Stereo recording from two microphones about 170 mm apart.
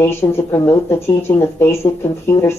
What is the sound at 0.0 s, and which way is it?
Speech, 15° left (ahead or behind).